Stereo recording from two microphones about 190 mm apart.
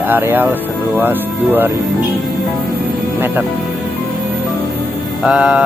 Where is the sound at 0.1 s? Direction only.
10° right (ahead or behind).